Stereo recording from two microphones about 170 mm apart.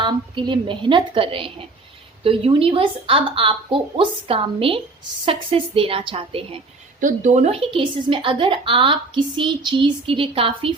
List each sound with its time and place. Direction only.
0.0 s a woman's voice: 25° right (ahead or behind)
7.0 s a woman's voice: 45° right (ahead or behind)